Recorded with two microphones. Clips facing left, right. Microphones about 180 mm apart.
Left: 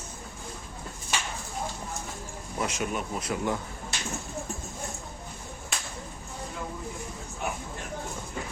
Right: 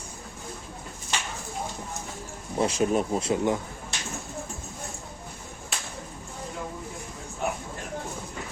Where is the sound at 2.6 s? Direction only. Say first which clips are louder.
Right 7 dB; 30° right (ahead or behind).